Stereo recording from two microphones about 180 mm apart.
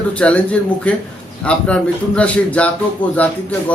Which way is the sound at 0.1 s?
5° left (ahead or behind).